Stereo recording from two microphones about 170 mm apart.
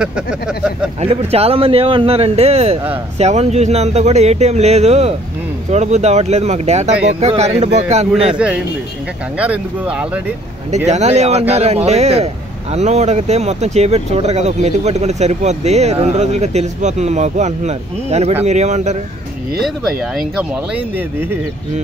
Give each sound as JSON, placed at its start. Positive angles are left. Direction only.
{"t": 0.0, "sound": "speech", "side_deg": -5}
{"t": 1.0, "sound": "speech", "side_deg": -35}
{"t": 8.3, "sound": "speech", "side_deg": -5}
{"t": 10.9, "sound": "speech", "side_deg": -40}
{"t": 19.6, "sound": "speech", "side_deg": 0}